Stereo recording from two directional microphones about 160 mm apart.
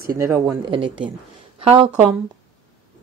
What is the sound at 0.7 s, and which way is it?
Speech, 30° right (ahead or behind).